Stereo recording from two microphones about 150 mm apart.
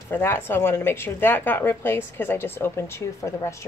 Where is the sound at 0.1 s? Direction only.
15° left (ahead or behind).